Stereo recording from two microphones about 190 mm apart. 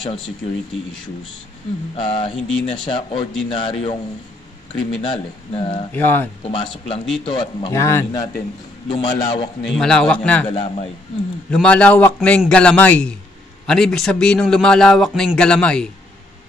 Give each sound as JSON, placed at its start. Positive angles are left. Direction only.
{"t": 2.0, "sound": "speech", "side_deg": 25}
{"t": 5.0, "sound": "speech", "side_deg": 25}
{"t": 5.9, "sound": "a man's voice", "side_deg": 10}
{"t": 6.5, "sound": "speech", "side_deg": 25}
{"t": 7.8, "sound": "a man's voice", "side_deg": 15}
{"t": 8.8, "sound": "speech", "side_deg": 30}
{"t": 9.7, "sound": "a man's voice", "side_deg": 5}
{"t": 10.5, "sound": "speech", "side_deg": 30}
{"t": 11.5, "sound": "a man's voice", "side_deg": 5}